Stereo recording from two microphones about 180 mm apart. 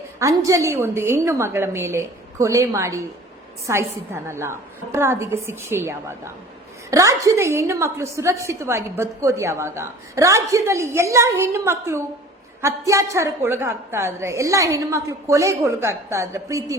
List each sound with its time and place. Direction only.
0.2 s a woman's voice: 20° right (ahead or behind)